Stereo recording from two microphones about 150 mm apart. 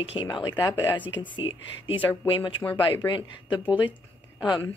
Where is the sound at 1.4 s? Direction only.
35° left (ahead or behind).